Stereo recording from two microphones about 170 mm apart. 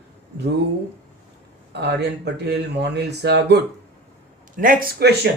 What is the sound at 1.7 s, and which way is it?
Speech, 80° right.